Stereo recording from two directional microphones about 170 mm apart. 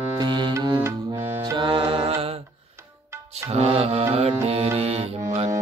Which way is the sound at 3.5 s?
35° right (ahead or behind).